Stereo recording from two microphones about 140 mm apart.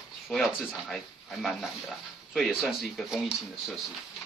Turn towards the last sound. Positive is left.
turn(degrees=-5)  # may be behind; listen again after turning